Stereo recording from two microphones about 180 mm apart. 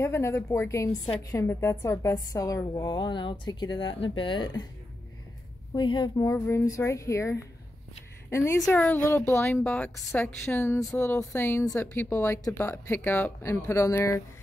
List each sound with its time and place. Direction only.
0.0 s a woman's voice: 15° left (ahead or behind)
5.8 s speech: 25° left (ahead or behind)
8.5 s speech: 5° left (ahead or behind)